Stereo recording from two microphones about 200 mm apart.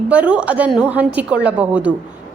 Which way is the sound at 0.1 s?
5° right (ahead or behind).